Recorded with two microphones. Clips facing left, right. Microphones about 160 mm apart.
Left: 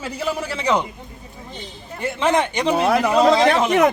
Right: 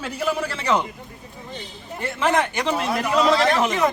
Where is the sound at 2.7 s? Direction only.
65° left (ahead or behind).